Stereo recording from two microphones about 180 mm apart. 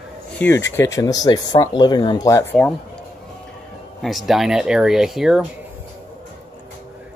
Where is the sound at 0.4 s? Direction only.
15° left (ahead or behind).